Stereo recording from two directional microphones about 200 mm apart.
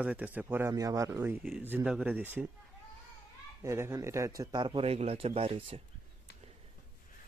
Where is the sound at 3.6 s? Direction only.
15° right (ahead or behind).